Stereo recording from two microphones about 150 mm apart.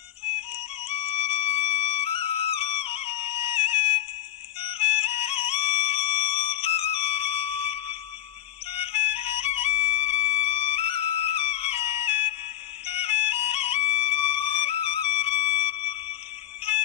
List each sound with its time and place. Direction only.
0.9 s music: 40° left (ahead or behind)